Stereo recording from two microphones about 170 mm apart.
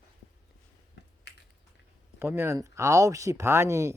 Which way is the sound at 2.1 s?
15° right (ahead or behind).